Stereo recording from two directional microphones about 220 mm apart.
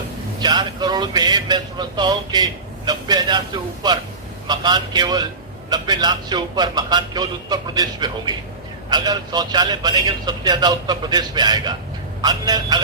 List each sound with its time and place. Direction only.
0.3 s a man's voice: 20° right (ahead or behind)